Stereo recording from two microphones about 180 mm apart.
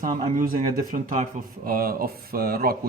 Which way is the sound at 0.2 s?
50° right (ahead or behind).